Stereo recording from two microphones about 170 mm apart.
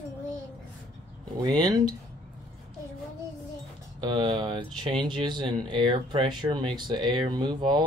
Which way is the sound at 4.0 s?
25° right (ahead or behind).